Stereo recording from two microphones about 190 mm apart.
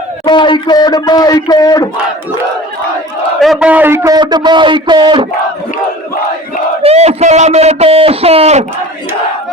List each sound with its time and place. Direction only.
0.3 s speech: 25° left (ahead or behind)
3.4 s a man's voice: centre (ahead or behind); by 5.3 s 25° right (ahead or behind)
6.8 s a man's voice: 35° right (ahead or behind)